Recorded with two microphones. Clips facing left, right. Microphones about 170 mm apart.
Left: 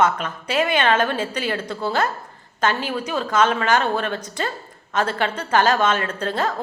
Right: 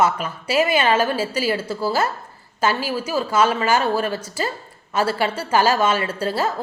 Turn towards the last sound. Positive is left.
turn(degrees=-5)  # may be behind; listen again after turning